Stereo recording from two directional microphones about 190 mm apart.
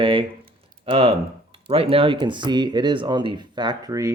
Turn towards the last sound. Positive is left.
turn(degrees=-20)  # may be behind; listen again after turning